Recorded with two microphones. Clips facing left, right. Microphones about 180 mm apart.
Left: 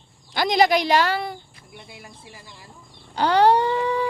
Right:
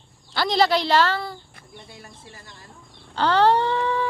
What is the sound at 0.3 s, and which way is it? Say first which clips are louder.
Speech: left 2 dB; 15° left (ahead or behind).